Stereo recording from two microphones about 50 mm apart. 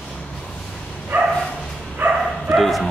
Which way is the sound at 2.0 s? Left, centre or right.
Right.